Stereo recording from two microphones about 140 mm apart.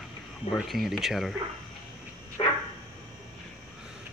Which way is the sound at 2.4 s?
40° left (ahead or behind).